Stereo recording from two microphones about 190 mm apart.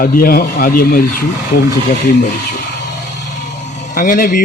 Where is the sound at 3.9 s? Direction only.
45° left (ahead or behind).